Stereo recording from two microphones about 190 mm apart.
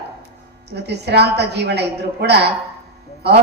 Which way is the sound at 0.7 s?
60° right (ahead or behind).